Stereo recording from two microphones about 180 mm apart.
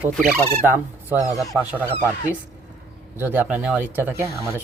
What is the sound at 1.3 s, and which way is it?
Speech, 20° left (ahead or behind).